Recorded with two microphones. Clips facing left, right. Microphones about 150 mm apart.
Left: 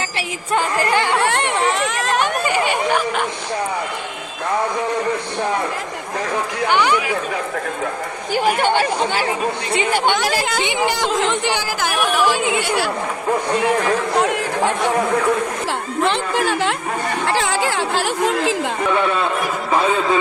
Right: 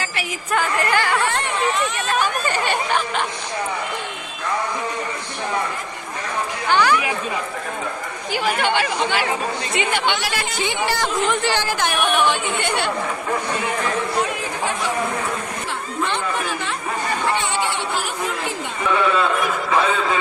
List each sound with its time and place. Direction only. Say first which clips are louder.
0.2 s a woman's voice: left 2 dB; 30° left (ahead or behind)
1.2 s speech: left 3 dB; 70° left (ahead or behind)
2.4 s a sound: left 3 dB; 10° left (ahead or behind)
6.7 s speech: even; 15° left (ahead or behind)
8.3 s speech: left 4 dB; 45° left (ahead or behind)
10.8 s speech: left 1 dB; 15° left (ahead or behind)
11.8 s music: left 2 dB; 5° left (ahead or behind)
14.2 s a sound: left 5 dB; 70° left (ahead or behind)
16.0 s speech: left 6 dB; 90° left